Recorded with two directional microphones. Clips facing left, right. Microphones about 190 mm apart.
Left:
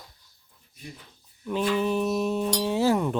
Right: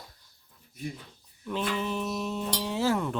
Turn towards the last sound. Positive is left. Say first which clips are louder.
# left 4 dB
turn(degrees=15)  # may be behind; listen again after turning